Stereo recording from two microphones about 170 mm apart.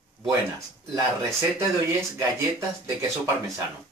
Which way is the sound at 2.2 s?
15° right (ahead or behind).